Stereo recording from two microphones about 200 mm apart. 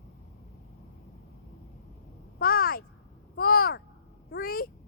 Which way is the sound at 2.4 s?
50° left (ahead or behind).